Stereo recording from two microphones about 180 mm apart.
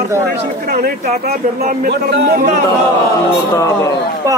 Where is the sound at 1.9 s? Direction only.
65° right (ahead or behind).